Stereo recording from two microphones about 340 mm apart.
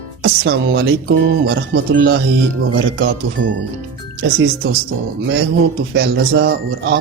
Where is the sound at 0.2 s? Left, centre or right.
Right.